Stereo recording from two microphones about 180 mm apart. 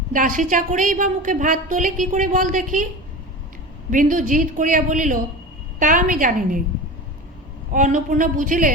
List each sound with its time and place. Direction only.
0.1 s a woman's voice: 50° right (ahead or behind)
3.9 s a woman's voice: 45° right (ahead or behind)
7.7 s a woman's voice: 45° right (ahead or behind)